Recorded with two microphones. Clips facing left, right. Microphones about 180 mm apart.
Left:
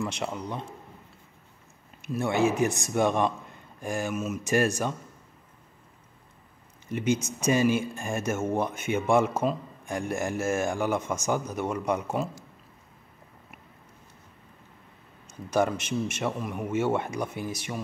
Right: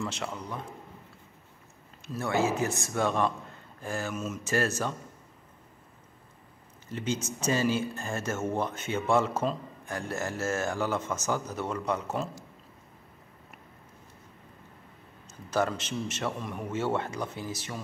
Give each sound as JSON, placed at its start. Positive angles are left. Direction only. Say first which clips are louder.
{"t": 0.0, "sound": "speech", "louder": "left 3 dB", "side_deg": 15}
{"t": 2.0, "sound": "speech", "louder": "left 3 dB", "side_deg": 15}
{"t": 6.9, "sound": "speech", "louder": "left 5 dB", "side_deg": 15}
{"t": 15.2, "sound": "speech", "louder": "left 3 dB", "side_deg": 10}